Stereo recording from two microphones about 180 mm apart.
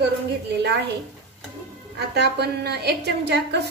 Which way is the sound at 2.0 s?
65° right (ahead or behind).